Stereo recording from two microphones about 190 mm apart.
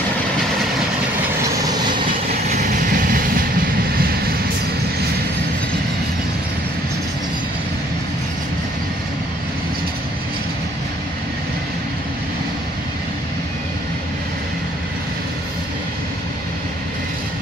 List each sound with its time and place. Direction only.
2.5 s vehicle: 45° right (ahead or behind)